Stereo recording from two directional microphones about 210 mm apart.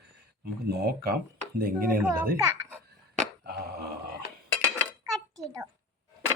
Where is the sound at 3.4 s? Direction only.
50° right (ahead or behind).